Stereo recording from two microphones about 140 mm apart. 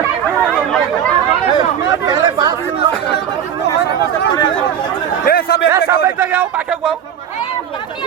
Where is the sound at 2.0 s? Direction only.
30° right (ahead or behind).